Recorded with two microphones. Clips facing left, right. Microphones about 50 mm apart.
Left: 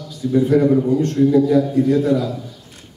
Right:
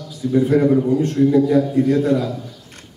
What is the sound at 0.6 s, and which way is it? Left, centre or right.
Speech, centre.